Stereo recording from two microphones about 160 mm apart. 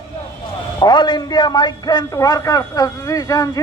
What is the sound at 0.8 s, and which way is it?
A man's voice, 30° left (ahead or behind).